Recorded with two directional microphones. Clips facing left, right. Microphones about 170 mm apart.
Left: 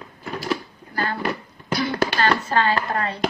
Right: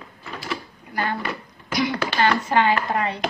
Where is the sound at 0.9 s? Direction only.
20° right (ahead or behind).